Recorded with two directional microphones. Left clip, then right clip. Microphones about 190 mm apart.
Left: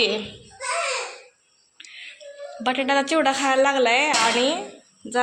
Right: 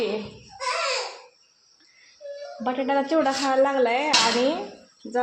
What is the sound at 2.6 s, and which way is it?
A woman's voice, 10° right (ahead or behind).